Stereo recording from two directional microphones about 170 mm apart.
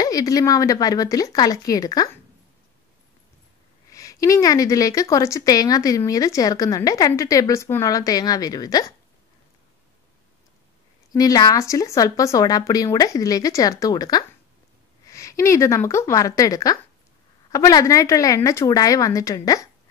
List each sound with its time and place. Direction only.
0.0 s a woman's voice: 20° left (ahead or behind)
3.9 s a woman's voice: 20° left (ahead or behind)
11.1 s a woman's voice: 20° left (ahead or behind)